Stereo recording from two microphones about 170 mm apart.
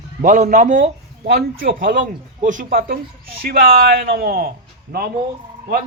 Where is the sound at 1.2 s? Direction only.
65° right (ahead or behind).